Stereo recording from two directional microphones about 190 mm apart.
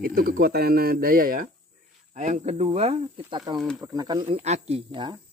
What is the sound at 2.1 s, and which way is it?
Speech, 40° right (ahead or behind).